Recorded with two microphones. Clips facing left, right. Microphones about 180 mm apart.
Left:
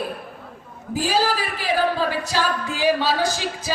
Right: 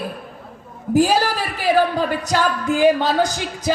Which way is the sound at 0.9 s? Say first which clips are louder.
Right 5 dB; 45° right (ahead or behind).